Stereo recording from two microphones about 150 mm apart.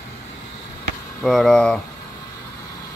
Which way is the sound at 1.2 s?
Centre (ahead or behind).